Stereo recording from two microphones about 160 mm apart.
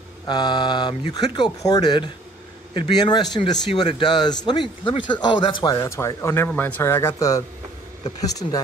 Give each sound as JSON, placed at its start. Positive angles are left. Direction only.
{"t": 0.3, "sound": "a man's voice", "side_deg": 25}
{"t": 5.8, "sound": "speech", "side_deg": 15}